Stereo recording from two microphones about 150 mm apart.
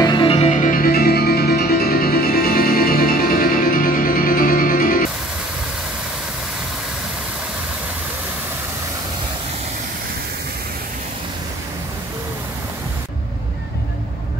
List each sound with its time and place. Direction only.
0.0 s music: 30° left (ahead or behind); by 5.0 s 70° left (ahead or behind)